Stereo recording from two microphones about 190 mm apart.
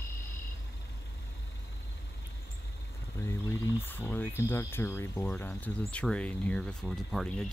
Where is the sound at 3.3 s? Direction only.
15° left (ahead or behind).